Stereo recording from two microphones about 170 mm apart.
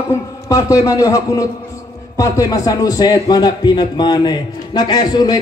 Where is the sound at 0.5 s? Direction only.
15° left (ahead or behind).